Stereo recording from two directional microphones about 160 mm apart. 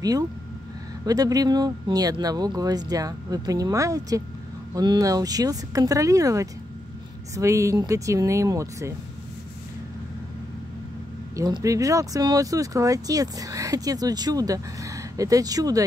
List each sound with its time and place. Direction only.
1.0 s speech: 25° right (ahead or behind)
11.3 s speech: 20° right (ahead or behind)